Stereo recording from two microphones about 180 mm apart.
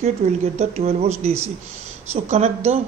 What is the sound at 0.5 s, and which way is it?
Speech, 35° right (ahead or behind).